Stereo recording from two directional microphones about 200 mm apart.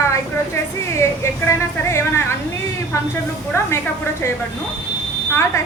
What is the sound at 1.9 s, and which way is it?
Speech, 15° left (ahead or behind).